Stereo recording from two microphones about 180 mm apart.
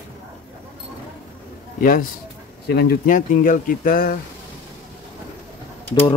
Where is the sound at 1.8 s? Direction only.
50° left (ahead or behind).